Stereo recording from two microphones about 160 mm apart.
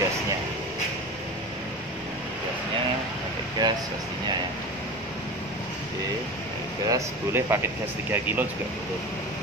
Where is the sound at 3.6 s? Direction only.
25° right (ahead or behind).